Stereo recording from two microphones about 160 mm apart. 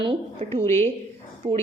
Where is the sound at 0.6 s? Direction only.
15° left (ahead or behind).